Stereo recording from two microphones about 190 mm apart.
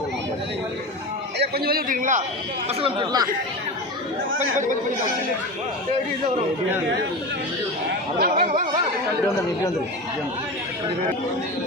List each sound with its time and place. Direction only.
1.4 s a man's voice: 55° right (ahead or behind)
2.6 s speech: 25° right (ahead or behind)
8.2 s speech: 40° right (ahead or behind)